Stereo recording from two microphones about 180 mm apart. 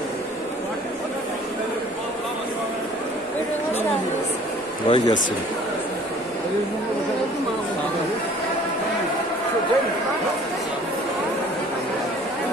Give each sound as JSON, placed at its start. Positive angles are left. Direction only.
{"t": 4.8, "sound": "speech", "side_deg": 25}